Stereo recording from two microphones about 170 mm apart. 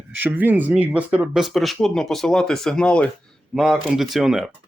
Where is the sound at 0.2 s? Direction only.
10° right (ahead or behind).